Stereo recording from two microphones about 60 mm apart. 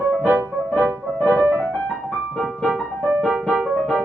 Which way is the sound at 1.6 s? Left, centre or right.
Left.